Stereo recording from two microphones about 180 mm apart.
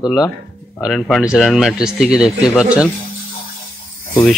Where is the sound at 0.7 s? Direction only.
5° left (ahead or behind).